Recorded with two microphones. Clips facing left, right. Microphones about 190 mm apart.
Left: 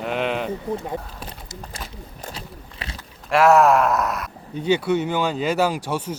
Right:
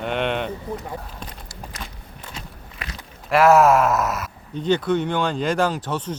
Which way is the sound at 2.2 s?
35° left (ahead or behind).